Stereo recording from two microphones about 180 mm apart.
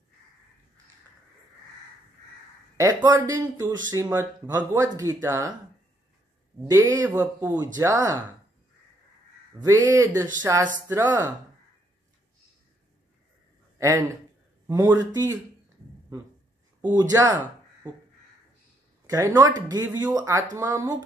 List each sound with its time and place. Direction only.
2.8 s speech: 20° right (ahead or behind)
6.7 s speech: 20° right (ahead or behind)
9.6 s speech: 20° right (ahead or behind)
13.7 s speech: 15° right (ahead or behind)
17.1 s speech: 20° right (ahead or behind)
19.0 s speech: 20° right (ahead or behind)